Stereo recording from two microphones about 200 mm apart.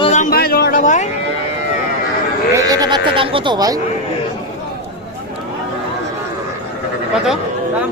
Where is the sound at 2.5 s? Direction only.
20° right (ahead or behind).